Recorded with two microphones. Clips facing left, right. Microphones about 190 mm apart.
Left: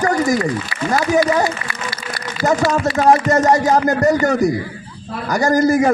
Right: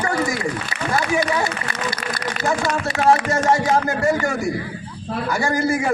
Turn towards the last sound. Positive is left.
turn(degrees=40)  # may be behind; listen again after turning